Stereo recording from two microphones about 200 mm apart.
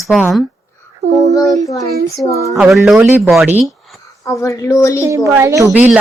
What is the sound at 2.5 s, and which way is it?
Speech, centre (ahead or behind).